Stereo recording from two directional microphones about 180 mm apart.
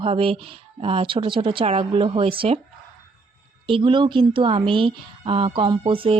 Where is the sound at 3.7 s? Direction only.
30° right (ahead or behind).